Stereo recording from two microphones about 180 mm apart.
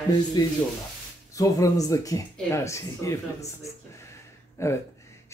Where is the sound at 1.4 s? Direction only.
20° left (ahead or behind).